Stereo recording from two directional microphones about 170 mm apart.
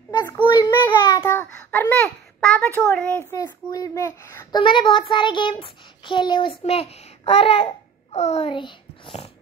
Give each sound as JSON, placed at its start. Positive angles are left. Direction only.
{"t": 0.1, "sound": "child singing", "side_deg": 20}
{"t": 0.9, "sound": "a child's voice", "side_deg": 20}
{"t": 3.3, "sound": "a child's voice", "side_deg": 20}
{"t": 4.6, "sound": "child singing", "side_deg": 30}